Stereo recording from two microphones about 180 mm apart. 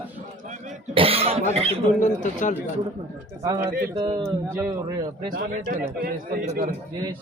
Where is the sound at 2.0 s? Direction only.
45° left (ahead or behind).